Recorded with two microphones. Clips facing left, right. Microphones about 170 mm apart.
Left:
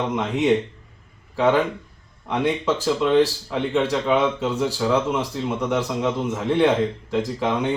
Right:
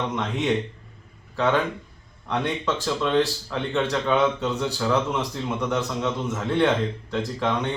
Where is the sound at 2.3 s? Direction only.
10° left (ahead or behind).